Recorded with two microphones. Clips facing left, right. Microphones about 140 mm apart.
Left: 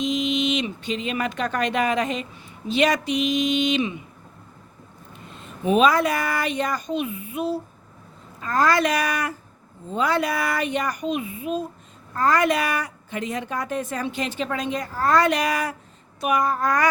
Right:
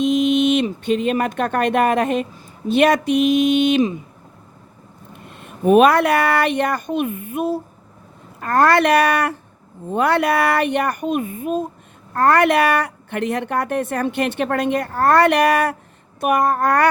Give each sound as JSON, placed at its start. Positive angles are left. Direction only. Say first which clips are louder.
{"t": 0.0, "sound": "a woman's voice", "louder": "right 7 dB", "side_deg": -55}
{"t": 3.8, "sound": "speech", "louder": "right 7 dB", "side_deg": -40}
{"t": 5.1, "sound": "a woman's voice", "louder": "right 2 dB", "side_deg": -60}
{"t": 12.1, "sound": "a woman's voice", "louder": "right 5 dB", "side_deg": -60}